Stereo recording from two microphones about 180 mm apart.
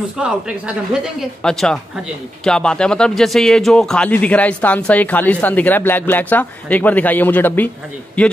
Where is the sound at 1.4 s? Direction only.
5° left (ahead or behind).